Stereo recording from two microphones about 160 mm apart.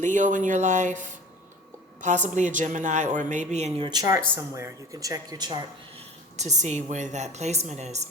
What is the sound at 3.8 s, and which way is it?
Speech, 25° right (ahead or behind).